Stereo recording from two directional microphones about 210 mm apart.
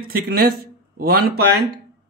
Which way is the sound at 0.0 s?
45° right (ahead or behind).